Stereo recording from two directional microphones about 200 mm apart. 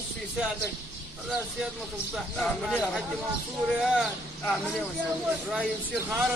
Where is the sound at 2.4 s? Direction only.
Centre (ahead or behind).